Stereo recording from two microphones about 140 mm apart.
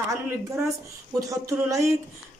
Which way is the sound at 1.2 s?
25° right (ahead or behind).